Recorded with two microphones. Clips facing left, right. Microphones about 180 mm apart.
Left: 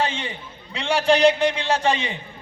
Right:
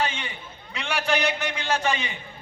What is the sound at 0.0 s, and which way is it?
A man's voice, 30° left (ahead or behind).